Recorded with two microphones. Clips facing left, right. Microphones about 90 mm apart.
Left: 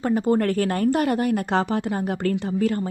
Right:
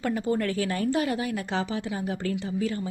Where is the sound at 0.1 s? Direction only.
45° left (ahead or behind).